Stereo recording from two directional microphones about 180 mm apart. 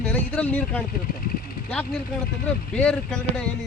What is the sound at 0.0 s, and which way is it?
Speech, 5° left (ahead or behind).